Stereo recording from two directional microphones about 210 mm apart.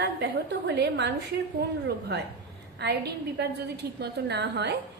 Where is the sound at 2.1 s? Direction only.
55° right (ahead or behind).